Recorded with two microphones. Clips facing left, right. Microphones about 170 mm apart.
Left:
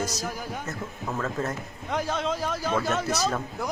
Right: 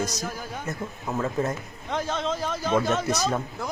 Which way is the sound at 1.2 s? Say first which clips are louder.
Right 4 dB; 15° right (ahead or behind).